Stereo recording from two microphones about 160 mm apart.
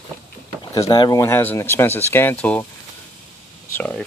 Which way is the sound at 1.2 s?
15° left (ahead or behind).